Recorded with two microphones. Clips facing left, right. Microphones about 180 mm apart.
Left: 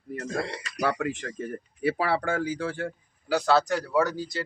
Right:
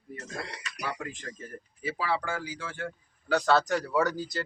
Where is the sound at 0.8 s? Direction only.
70° left (ahead or behind); by 2.9 s 35° left (ahead or behind).